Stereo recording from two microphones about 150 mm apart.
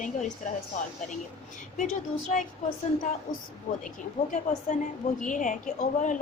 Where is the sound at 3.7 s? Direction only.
60° left (ahead or behind).